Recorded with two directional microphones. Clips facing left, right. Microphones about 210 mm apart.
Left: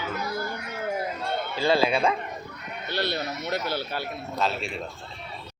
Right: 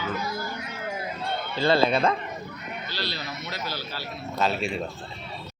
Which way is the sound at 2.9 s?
60° left (ahead or behind).